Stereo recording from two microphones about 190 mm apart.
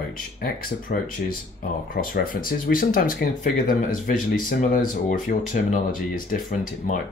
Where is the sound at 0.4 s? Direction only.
45° left (ahead or behind).